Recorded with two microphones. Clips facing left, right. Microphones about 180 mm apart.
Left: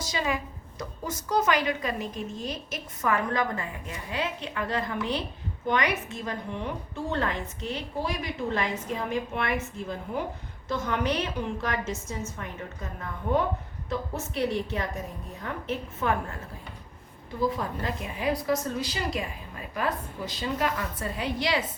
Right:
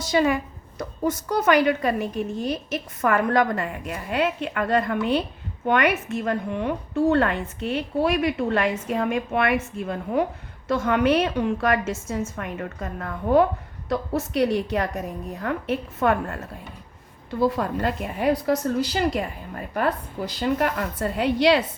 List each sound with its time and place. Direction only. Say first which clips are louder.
0.0 s a woman's voice: right 9 dB; 60° right (ahead or behind)
17.4 s a woman's voice: right 6 dB; 70° right (ahead or behind)